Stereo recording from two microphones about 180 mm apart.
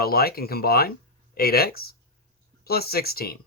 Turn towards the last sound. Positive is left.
turn(degrees=55)  # may be behind; listen again after turning